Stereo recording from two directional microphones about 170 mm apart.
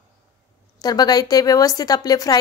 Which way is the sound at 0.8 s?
25° left (ahead or behind).